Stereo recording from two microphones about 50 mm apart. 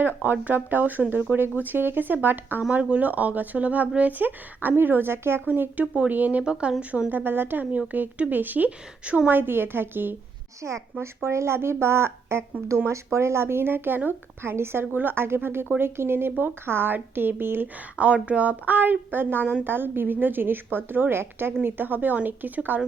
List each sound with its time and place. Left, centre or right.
0.0 s speech: right
5.5 s speech: right
6.4 s speech: centre
7.1 s speech: right
9.3 s a woman's voice: right
10.6 s speech: right
12.9 s a woman's voice: right
14.5 s a woman's voice: right
17.9 s a woman's voice: right